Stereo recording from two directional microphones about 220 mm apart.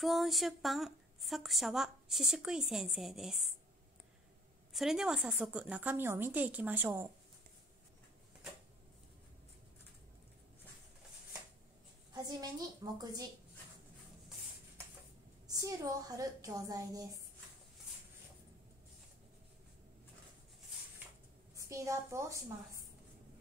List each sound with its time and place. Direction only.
0.0 s a woman's voice: centre (ahead or behind)
4.7 s a woman's voice: centre (ahead or behind)
12.1 s a woman's voice: 15° right (ahead or behind)
15.4 s a woman's voice: 15° right (ahead or behind)
21.5 s a woman's voice: 15° right (ahead or behind)